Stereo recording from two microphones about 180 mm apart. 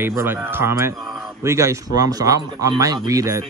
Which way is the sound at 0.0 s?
15° right (ahead or behind).